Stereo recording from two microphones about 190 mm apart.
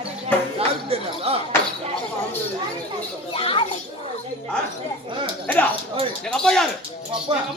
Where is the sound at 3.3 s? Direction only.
30° left (ahead or behind).